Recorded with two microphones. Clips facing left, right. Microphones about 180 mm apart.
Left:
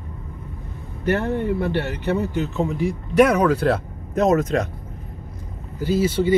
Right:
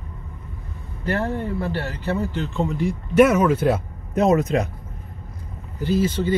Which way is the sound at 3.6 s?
10° right (ahead or behind).